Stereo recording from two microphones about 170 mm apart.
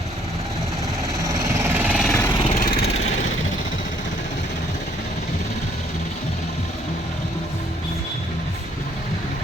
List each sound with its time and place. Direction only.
1.7 s vehicle: 5° right (ahead or behind)
2.3 s vehicle: 35° left (ahead or behind)
2.6 s vehicle: 60° left (ahead or behind)